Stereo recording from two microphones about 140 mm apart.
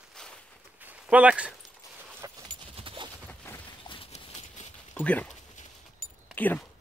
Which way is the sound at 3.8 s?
40° left (ahead or behind).